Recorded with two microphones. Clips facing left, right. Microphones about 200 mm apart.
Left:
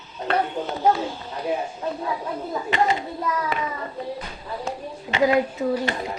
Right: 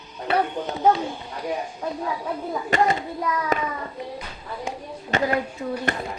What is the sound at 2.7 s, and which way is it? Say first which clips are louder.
Speech: right 1 dB; 45° right (ahead or behind).